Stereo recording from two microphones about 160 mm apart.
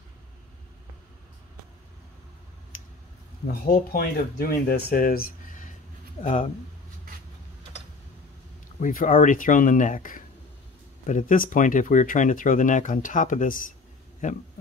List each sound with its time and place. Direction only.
2.7 s squish: 55° left (ahead or behind)
3.4 s speech: 65° left (ahead or behind)
8.7 s speech: 50° left (ahead or behind)